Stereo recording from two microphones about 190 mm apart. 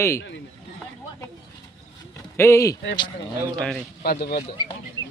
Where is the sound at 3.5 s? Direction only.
5° left (ahead or behind).